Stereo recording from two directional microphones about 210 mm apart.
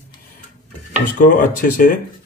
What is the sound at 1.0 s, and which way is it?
Speech, 40° left (ahead or behind).